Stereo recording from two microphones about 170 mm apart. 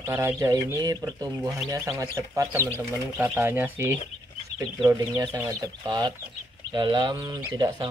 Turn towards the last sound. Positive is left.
turn(degrees=-25)  # may be behind; listen again after turning